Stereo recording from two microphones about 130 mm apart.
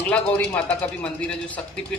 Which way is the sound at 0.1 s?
10° left (ahead or behind).